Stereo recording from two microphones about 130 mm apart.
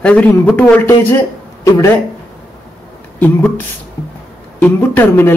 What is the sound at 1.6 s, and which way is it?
Speech, 25° left (ahead or behind).